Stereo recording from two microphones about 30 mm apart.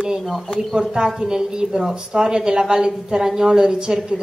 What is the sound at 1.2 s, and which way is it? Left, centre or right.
A woman's voice, right.